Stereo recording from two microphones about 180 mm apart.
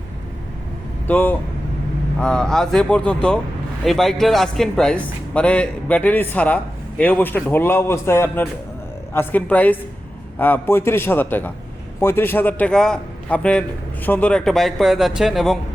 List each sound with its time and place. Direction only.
1.0 s a man's voice: 10° left (ahead or behind)